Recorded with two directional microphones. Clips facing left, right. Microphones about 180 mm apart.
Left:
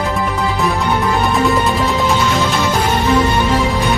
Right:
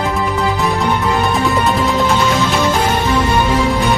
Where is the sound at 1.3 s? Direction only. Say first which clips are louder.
Left 2 dB; centre (ahead or behind).